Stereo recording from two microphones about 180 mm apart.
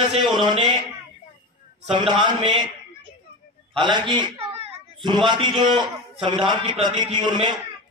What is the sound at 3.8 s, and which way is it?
A man's voice, 25° right (ahead or behind).